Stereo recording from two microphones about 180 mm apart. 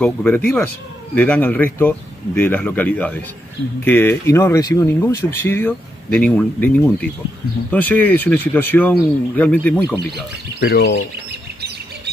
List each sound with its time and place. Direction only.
0.0 s speech: 10° left (ahead or behind)
10.6 s speech: 70° left (ahead or behind)